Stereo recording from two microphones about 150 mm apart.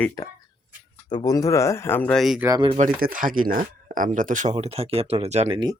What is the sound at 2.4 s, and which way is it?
Speech, 15° right (ahead or behind).